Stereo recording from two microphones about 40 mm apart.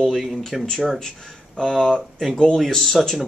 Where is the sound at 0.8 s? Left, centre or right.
Centre.